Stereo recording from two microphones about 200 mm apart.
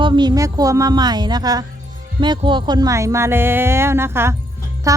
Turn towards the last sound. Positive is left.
turn(degrees=-15)  # may be behind; listen again after turning